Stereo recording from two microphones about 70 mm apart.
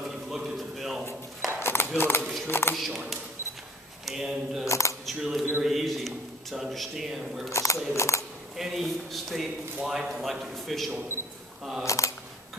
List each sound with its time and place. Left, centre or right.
0.0 s a sound: centre
1.6 s a sound: left
2.0 s speech: left
2.7 s a man's voice: centre
4.0 s speech: centre
4.6 s camera: left
5.0 s speech: centre
5.6 s a sound: centre
7.5 s speech: left
8.5 s a man's voice: centre
11.8 s speech: left